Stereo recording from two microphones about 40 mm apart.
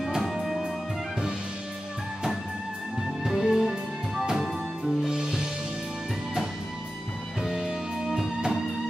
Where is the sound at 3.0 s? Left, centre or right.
Centre.